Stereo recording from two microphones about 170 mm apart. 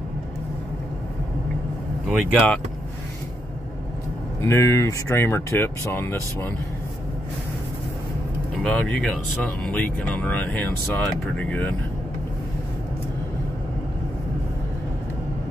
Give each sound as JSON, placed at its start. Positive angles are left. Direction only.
{"t": 2.0, "sound": "speech", "side_deg": 0}
{"t": 4.5, "sound": "speech", "side_deg": 15}
{"t": 8.6, "sound": "speech", "side_deg": 5}